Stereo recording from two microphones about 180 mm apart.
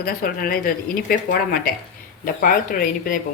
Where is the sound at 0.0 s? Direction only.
50° left (ahead or behind).